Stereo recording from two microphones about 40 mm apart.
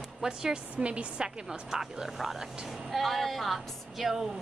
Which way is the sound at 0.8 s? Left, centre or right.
Right.